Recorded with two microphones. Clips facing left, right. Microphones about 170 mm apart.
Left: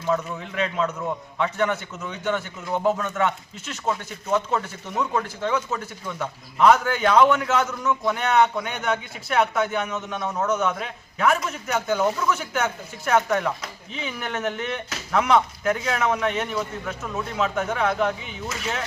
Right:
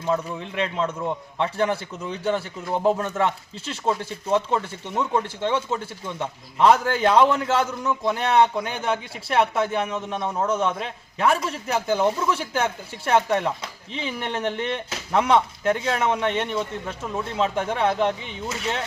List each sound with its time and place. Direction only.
0.0 s a man's voice: 30° right (ahead or behind)